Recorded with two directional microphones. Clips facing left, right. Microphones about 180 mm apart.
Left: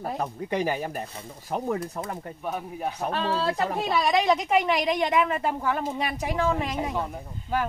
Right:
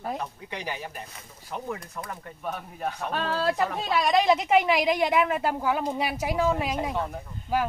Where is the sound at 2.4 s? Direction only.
10° left (ahead or behind).